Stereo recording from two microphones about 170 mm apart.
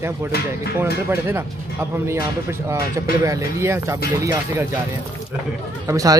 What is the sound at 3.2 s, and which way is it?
Speech, 15° right (ahead or behind).